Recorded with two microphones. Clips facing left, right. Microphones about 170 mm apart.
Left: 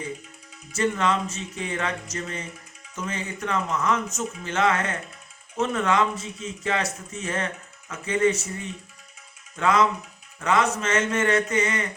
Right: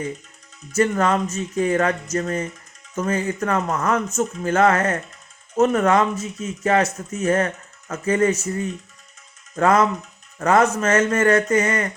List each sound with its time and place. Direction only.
0.7 s speech: 45° right (ahead or behind)